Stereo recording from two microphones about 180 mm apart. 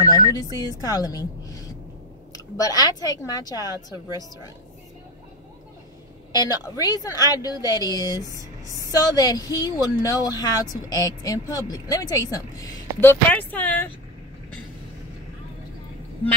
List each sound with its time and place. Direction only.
0.0 s speech: 20° left (ahead or behind)
6.3 s speech: 20° left (ahead or behind)
8.2 s a sound: 20° right (ahead or behind)
8.7 s speech: 20° left (ahead or behind)